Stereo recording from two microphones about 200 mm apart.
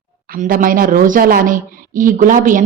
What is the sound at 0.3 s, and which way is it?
A woman's voice, 45° right (ahead or behind).